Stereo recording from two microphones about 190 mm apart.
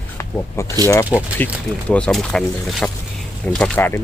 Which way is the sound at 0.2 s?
15° left (ahead or behind).